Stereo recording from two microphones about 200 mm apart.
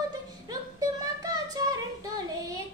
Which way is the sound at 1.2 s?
20° right (ahead or behind).